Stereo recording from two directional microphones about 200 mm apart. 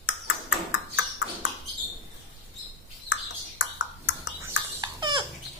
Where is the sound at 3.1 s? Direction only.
65° left (ahead or behind).